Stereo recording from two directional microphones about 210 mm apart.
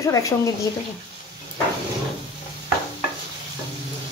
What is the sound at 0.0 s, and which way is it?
Speech, 15° left (ahead or behind).